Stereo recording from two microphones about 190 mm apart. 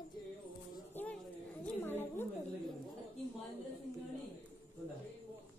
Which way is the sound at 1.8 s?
10° left (ahead or behind).